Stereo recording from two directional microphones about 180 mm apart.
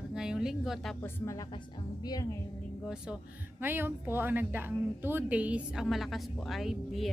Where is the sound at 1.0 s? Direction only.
15° left (ahead or behind).